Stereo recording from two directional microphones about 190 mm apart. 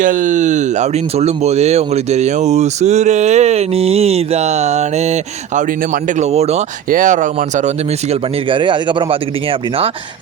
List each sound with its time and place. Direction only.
0.0 s speech: 45° right (ahead or behind)
6.1 s speech: 35° right (ahead or behind)
8.4 s speech: 25° right (ahead or behind)